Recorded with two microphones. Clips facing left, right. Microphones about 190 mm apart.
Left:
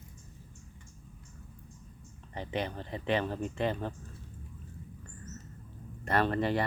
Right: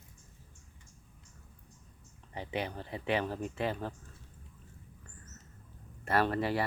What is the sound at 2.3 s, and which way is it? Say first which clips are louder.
Speech: left 2 dB; 10° right (ahead or behind).